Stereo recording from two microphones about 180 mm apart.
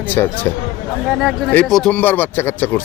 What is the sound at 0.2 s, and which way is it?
Speech, 10° left (ahead or behind).